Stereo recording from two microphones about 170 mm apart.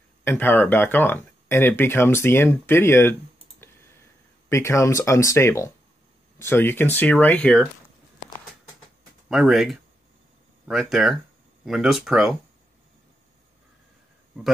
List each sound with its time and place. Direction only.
0.2 s speech: 10° left (ahead or behind)
4.5 s speech: 15° left (ahead or behind)
9.3 s speech: centre (ahead or behind)